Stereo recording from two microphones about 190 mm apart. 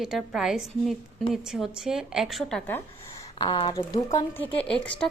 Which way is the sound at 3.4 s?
20° left (ahead or behind).